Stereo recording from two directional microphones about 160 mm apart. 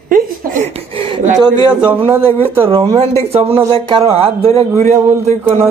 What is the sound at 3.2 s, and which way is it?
Speech, 40° right (ahead or behind).